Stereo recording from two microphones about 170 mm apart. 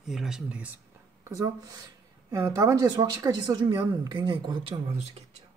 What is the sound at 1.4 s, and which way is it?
A woman's voice, 20° right (ahead or behind).